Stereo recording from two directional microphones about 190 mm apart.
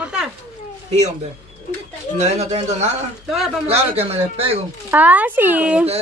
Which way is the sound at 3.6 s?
30° right (ahead or behind).